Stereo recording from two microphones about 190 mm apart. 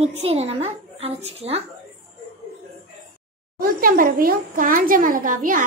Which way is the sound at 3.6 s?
50° right (ahead or behind).